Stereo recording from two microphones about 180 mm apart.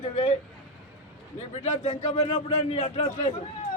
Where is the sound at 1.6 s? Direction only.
35° left (ahead or behind).